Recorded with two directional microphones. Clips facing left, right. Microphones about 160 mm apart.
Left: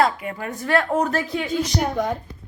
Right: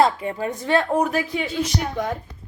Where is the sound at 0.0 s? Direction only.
30° right (ahead or behind).